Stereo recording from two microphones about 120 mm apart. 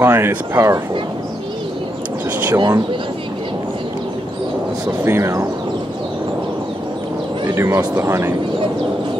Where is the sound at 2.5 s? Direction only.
30° right (ahead or behind).